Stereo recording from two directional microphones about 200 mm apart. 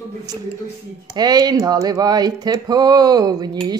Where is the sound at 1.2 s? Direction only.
20° right (ahead or behind).